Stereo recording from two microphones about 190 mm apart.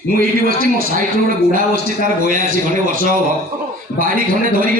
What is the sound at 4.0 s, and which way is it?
Speech, 50° right (ahead or behind).